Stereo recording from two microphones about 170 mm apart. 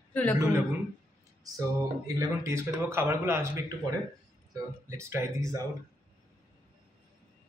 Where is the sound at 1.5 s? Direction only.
20° right (ahead or behind).